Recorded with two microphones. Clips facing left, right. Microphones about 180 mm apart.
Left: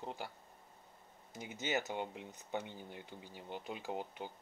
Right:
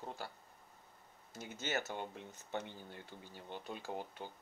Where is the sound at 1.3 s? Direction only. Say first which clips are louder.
Left 2 dB; 15° left (ahead or behind).